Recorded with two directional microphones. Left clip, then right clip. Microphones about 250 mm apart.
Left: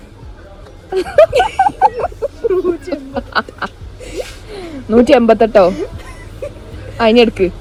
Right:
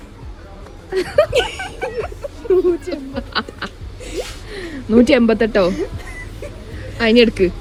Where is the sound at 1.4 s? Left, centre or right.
Centre.